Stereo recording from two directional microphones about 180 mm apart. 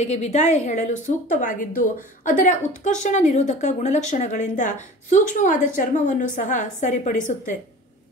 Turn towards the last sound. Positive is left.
turn(degrees=45)  # may be behind; listen again after turning